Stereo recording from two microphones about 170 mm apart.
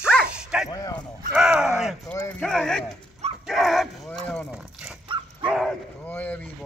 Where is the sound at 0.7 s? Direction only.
20° left (ahead or behind).